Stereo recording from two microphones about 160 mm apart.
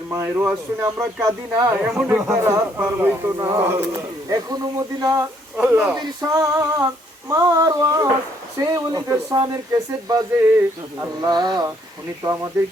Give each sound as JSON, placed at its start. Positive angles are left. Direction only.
{"t": 0.1, "sound": "speech", "side_deg": -15}
{"t": 1.7, "sound": "speech", "side_deg": -5}
{"t": 2.3, "sound": "speech", "side_deg": -15}
{"t": 3.3, "sound": "speech", "side_deg": -25}
{"t": 5.5, "sound": "speech", "side_deg": -5}
{"t": 5.9, "sound": "speech", "side_deg": -25}